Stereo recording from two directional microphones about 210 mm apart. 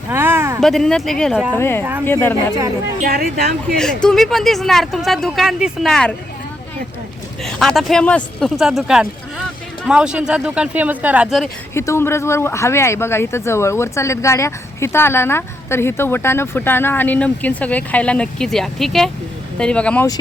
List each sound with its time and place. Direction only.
0.1 s a sound: 10° right (ahead or behind)
0.6 s speech: centre (ahead or behind)
1.5 s speech: 10° left (ahead or behind)
3.0 s speech: 45° right (ahead or behind)
3.8 s speech: 5° left (ahead or behind)
7.4 s speech: centre (ahead or behind)
11.7 s speech: 10° left (ahead or behind)